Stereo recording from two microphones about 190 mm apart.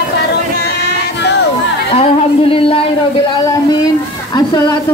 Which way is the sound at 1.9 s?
30° left (ahead or behind).